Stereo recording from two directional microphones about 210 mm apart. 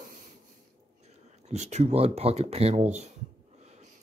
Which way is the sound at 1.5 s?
30° right (ahead or behind).